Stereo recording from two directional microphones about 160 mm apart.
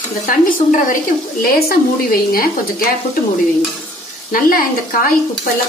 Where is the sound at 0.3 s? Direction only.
60° left (ahead or behind).